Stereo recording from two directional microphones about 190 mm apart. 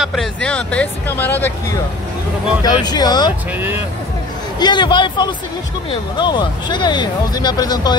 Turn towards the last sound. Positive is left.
turn(degrees=20)  # may be behind; listen again after turning